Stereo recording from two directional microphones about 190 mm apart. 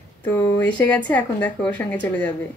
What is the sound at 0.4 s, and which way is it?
Speech, 15° left (ahead or behind).